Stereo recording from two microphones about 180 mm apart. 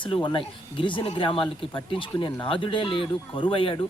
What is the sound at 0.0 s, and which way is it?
Speech, 25° left (ahead or behind).